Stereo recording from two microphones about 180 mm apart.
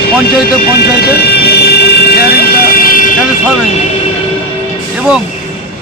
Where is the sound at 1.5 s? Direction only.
65° left (ahead or behind).